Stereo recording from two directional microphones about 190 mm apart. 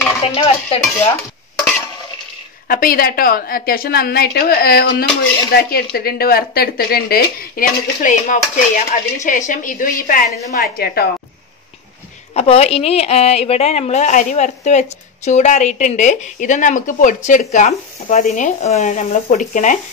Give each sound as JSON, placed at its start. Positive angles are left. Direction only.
{"t": 0.2, "sound": "a woman's voice", "side_deg": 30}
{"t": 2.7, "sound": "a woman's voice", "side_deg": 50}
{"t": 12.4, "sound": "a woman's voice", "side_deg": 35}